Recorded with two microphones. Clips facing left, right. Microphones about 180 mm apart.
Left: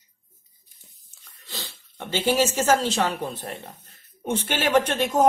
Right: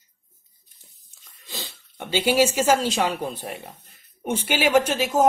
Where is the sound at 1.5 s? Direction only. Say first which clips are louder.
Right 1 dB; 15° right (ahead or behind).